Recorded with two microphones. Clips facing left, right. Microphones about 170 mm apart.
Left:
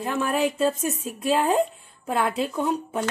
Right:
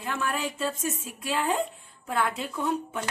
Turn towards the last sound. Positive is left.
turn(degrees=35)  # may be behind; listen again after turning